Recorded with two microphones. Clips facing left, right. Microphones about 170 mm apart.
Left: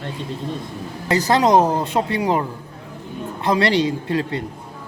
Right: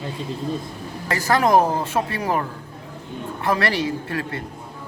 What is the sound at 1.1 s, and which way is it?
Speech, 20° left (ahead or behind).